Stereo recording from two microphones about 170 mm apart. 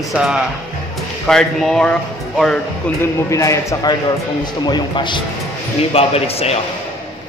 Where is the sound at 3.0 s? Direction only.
20° left (ahead or behind); by 6.6 s 35° left (ahead or behind).